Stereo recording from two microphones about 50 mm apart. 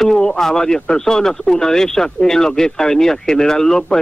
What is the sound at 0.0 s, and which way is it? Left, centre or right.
Speech, centre.